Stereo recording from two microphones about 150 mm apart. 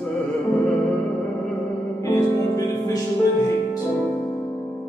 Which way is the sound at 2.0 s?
25° left (ahead or behind).